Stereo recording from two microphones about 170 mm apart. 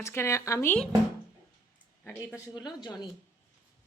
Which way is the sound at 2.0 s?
10° left (ahead or behind).